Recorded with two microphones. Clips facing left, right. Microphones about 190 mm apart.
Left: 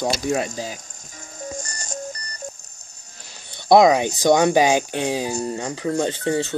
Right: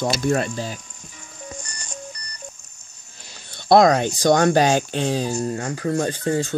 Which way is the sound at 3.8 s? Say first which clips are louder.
Left 1 dB; 10° left (ahead or behind).